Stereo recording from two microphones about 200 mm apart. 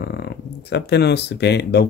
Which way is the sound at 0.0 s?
55° left (ahead or behind).